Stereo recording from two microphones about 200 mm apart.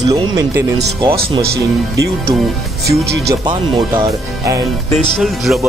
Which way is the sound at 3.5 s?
25° right (ahead or behind).